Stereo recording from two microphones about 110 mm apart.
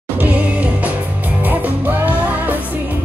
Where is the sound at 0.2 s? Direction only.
15° right (ahead or behind).